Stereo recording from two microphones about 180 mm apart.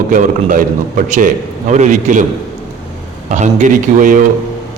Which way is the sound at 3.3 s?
40° right (ahead or behind).